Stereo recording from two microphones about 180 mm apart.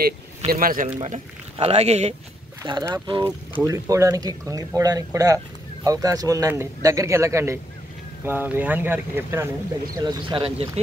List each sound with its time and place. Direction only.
0.5 s a man's voice: 50° right (ahead or behind)
1.1 s speech: 35° right (ahead or behind)
2.8 s speech: 20° right (ahead or behind)
9.9 s speech: 25° right (ahead or behind)